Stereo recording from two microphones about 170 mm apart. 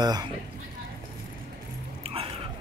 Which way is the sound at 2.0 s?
35° right (ahead or behind).